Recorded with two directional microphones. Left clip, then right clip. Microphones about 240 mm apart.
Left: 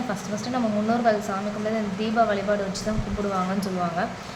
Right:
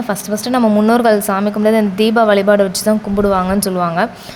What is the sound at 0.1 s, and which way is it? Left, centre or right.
A woman's voice, right.